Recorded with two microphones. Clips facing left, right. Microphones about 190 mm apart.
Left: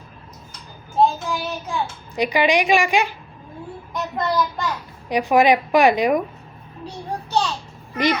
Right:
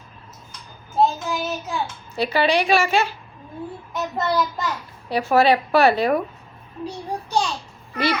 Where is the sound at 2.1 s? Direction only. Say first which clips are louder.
Left 1 dB; 15° left (ahead or behind).